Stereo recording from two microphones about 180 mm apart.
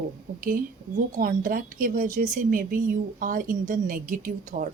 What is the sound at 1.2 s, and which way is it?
Speech, 50° right (ahead or behind).